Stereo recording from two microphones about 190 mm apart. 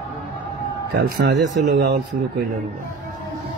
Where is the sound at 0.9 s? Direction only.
55° right (ahead or behind).